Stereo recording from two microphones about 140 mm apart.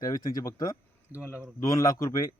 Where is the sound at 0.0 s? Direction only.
25° left (ahead or behind).